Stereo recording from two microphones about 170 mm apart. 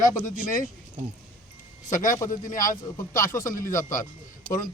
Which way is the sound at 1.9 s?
50° left (ahead or behind).